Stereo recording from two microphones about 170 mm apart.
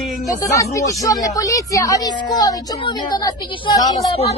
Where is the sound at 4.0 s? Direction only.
35° left (ahead or behind).